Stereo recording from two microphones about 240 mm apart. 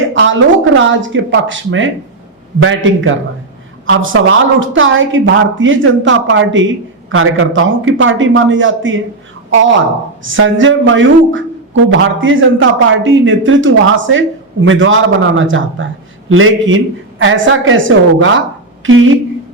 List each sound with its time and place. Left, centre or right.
0.1 s a woman's voice: right
10.2 s a woman's voice: right